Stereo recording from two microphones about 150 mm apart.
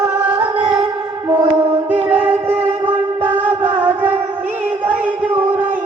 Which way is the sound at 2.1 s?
10° right (ahead or behind).